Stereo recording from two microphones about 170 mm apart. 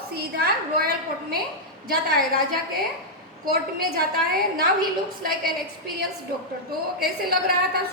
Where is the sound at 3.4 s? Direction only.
60° right (ahead or behind).